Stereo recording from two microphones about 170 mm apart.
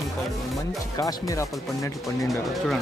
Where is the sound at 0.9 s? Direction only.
20° left (ahead or behind).